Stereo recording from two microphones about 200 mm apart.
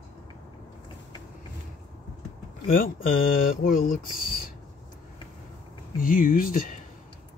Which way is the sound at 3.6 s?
45° left (ahead or behind).